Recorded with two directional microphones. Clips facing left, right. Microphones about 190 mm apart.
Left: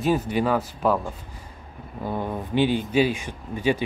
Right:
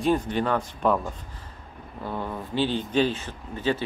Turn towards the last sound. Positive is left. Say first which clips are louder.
# left 3 dB
turn(degrees=15)  # may be behind; listen again after turning